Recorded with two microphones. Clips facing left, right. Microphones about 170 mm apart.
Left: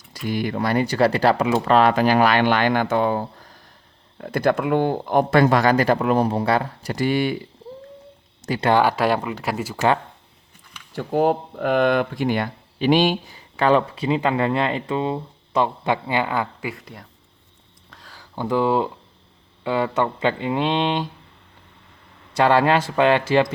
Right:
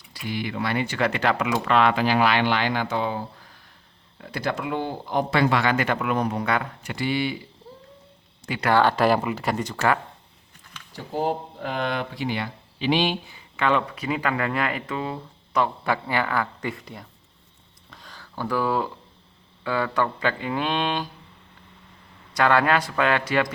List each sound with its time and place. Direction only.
0.1 s speech: 45° left (ahead or behind)
8.5 s speech: 40° left (ahead or behind)
8.8 s speech: 5° left (ahead or behind)
9.7 s speech: 20° left (ahead or behind)
10.9 s speech: 60° left (ahead or behind); by 16.5 s 20° left (ahead or behind)
16.6 s speech: 5° left (ahead or behind)
17.9 s a sound: 5° left (ahead or behind)
18.2 s speech: 20° left (ahead or behind)
22.4 s speech: 25° left (ahead or behind)